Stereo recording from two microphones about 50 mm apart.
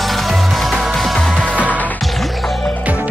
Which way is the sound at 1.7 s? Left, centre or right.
Left.